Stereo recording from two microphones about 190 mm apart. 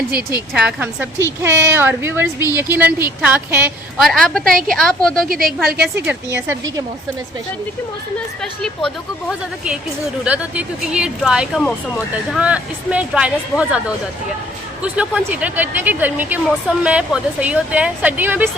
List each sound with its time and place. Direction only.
0.5 s speech: 5° right (ahead or behind)
4.0 s speech: 5° left (ahead or behind)
5.3 s a woman's voice: 50° right (ahead or behind)
5.8 s speech: 10° right (ahead or behind)
10.2 s speech: 5° right (ahead or behind)